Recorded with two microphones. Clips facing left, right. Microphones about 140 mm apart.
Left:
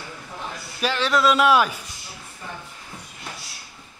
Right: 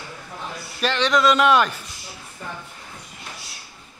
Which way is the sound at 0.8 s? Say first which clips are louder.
Right 1 dB; 5° left (ahead or behind).